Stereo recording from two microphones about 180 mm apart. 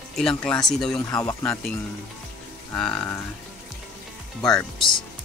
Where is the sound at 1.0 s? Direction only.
20° left (ahead or behind).